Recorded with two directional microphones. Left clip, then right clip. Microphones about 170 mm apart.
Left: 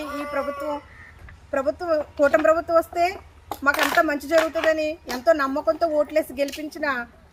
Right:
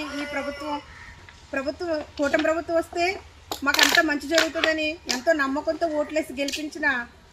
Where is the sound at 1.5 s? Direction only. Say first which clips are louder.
Left 5 dB; 15° left (ahead or behind).